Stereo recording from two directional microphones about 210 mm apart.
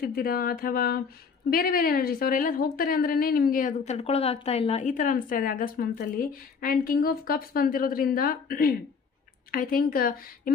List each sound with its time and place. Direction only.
0.0 s a woman's voice: 45° left (ahead or behind)